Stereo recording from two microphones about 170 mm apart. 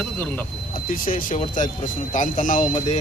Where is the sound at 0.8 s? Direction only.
55° left (ahead or behind).